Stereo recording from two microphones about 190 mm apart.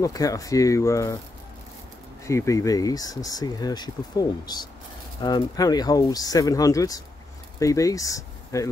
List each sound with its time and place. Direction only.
0.0 s speech: 20° left (ahead or behind)
2.2 s speech: 15° left (ahead or behind)